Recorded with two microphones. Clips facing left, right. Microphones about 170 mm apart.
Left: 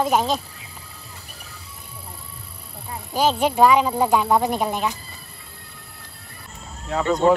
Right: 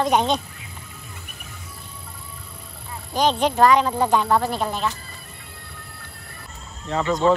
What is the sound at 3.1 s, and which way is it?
Speech, 5° left (ahead or behind).